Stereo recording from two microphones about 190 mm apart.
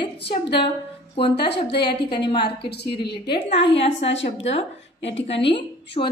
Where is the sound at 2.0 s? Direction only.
25° left (ahead or behind).